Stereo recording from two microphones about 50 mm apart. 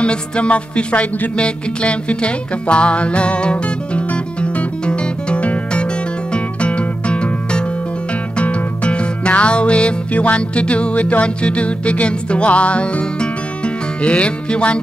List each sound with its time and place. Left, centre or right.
0.0 s music: left